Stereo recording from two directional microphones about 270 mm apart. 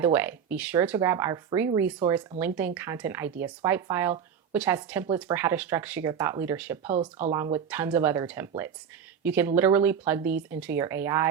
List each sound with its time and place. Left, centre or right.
0.0 s speech: centre
6.9 s speech: right
7.3 s speech: centre